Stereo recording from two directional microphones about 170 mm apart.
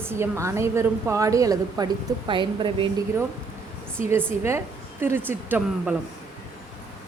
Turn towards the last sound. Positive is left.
turn(degrees=-5)  # may be behind; listen again after turning